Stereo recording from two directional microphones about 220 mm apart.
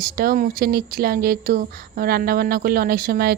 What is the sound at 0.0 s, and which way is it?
Speech, 40° right (ahead or behind).